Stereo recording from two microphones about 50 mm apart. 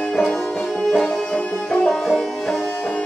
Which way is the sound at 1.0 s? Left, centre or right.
Centre.